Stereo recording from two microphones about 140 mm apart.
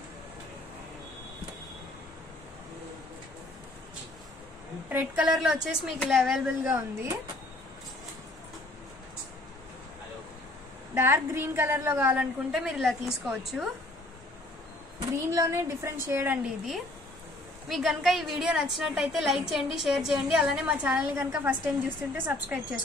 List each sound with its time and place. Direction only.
4.8 s a woman's voice: 10° right (ahead or behind)
6.8 s a woman's voice: 25° right (ahead or behind)
11.0 s a woman's voice: 15° right (ahead or behind)
15.2 s a woman's voice: 20° right (ahead or behind)
17.6 s a woman's voice: centre (ahead or behind)